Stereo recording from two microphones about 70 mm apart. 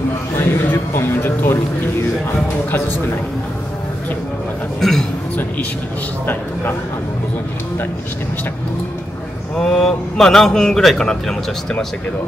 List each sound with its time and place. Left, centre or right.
0.4 s music: left
4.7 s a man's voice: centre
9.6 s a man's voice: centre